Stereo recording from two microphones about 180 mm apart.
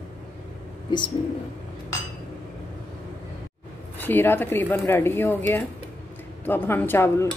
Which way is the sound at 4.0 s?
10° left (ahead or behind).